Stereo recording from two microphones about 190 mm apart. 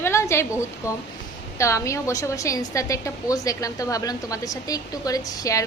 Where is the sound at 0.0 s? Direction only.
15° left (ahead or behind).